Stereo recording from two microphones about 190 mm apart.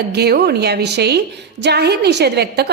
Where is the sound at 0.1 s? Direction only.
55° right (ahead or behind).